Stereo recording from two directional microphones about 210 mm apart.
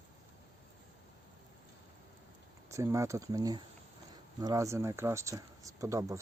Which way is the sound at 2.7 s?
15° right (ahead or behind).